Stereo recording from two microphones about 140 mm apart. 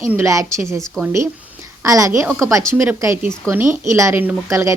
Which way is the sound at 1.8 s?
25° right (ahead or behind).